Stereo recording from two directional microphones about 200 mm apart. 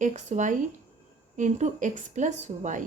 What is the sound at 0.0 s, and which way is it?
A woman's voice, 35° right (ahead or behind).